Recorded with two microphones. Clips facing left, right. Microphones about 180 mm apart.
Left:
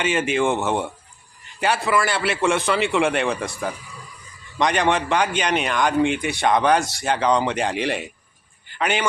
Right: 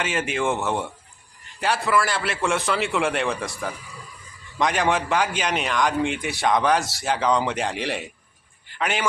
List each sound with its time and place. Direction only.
0.0 s speech: centre (ahead or behind)